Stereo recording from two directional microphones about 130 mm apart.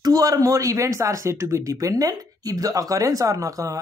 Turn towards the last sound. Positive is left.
turn(degrees=-25)  # may be behind; listen again after turning